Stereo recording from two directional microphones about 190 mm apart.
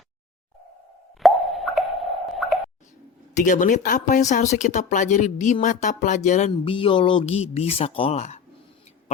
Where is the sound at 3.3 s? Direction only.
45° left (ahead or behind).